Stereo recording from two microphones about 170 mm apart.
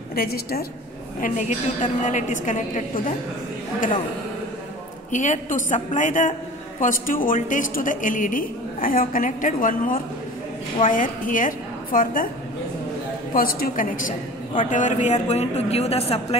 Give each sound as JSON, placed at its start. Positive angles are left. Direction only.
{"t": 0.1, "sound": "a woman's voice", "side_deg": 60}
{"t": 1.2, "sound": "a woman's voice", "side_deg": 45}
{"t": 5.1, "sound": "a woman's voice", "side_deg": 45}
{"t": 13.3, "sound": "a woman's voice", "side_deg": 55}